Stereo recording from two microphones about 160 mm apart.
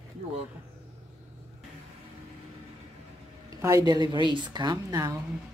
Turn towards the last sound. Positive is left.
turn(degrees=-20)  # may be behind; listen again after turning